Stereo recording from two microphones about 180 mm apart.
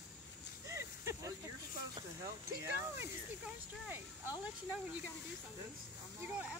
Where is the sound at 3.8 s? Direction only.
10° right (ahead or behind).